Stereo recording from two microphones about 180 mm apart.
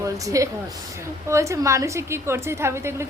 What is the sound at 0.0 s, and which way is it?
A woman's voice, 20° right (ahead or behind).